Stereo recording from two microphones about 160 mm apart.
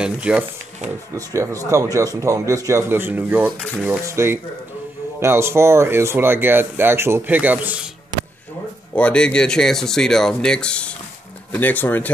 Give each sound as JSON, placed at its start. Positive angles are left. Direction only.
{"t": 0.0, "sound": "speech", "side_deg": -5}
{"t": 1.1, "sound": "speech", "side_deg": -20}
{"t": 8.9, "sound": "speech", "side_deg": 5}